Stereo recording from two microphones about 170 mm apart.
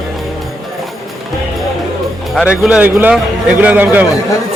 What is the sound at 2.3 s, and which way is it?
A man's voice, 5° right (ahead or behind).